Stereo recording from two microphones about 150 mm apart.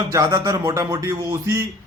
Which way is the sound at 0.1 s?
20° right (ahead or behind).